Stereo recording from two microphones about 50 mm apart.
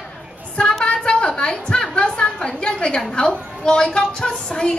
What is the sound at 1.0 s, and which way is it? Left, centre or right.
A woman's voice, centre.